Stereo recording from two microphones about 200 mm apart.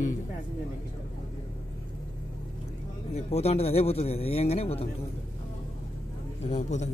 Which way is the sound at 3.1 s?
30° left (ahead or behind).